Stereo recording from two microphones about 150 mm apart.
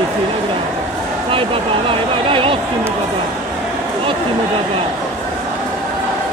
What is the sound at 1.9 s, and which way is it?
Speech, 35° right (ahead or behind).